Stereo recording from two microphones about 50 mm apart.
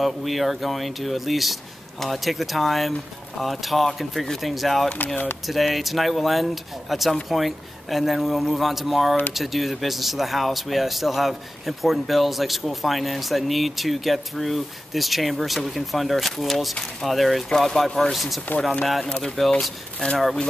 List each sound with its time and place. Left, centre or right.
0.0 s speech: centre
4.9 s speech: left
5.5 s speech: centre
19.0 s speech: centre